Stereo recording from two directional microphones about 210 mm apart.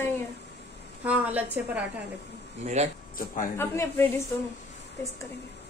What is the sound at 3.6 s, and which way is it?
Speech, 10° left (ahead or behind).